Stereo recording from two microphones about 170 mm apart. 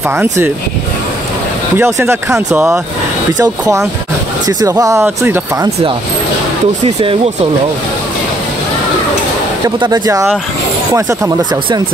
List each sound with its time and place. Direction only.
0.1 s speech: 15° right (ahead or behind)
1.8 s speech: 15° right (ahead or behind)
4.5 s speech: 20° right (ahead or behind)
9.8 s speech: 25° right (ahead or behind)